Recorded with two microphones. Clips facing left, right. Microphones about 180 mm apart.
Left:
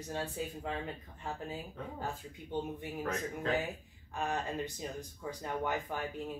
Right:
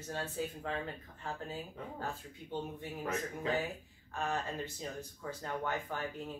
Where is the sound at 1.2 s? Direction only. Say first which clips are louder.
Left 1 dB; 15° left (ahead or behind).